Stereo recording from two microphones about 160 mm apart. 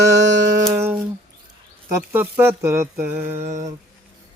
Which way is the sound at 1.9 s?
15° right (ahead or behind).